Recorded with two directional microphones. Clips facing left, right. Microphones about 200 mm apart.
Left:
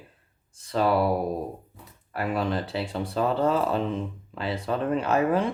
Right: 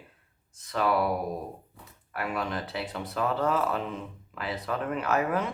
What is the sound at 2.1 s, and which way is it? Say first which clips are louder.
Speech: left 5 dB; 30° left (ahead or behind).